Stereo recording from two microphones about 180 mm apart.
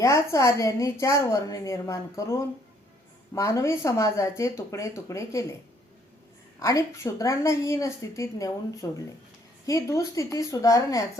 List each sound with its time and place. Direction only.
0.0 s a woman's voice: 15° left (ahead or behind)
6.6 s a woman's voice: 20° left (ahead or behind)